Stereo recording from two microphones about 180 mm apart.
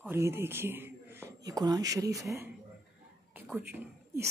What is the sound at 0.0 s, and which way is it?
A woman's voice, 15° right (ahead or behind).